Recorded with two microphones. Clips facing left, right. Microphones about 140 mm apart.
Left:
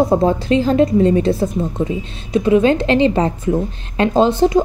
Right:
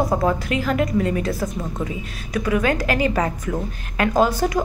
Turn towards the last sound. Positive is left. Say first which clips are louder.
# left 5 dB
turn(degrees=25)  # may be behind; listen again after turning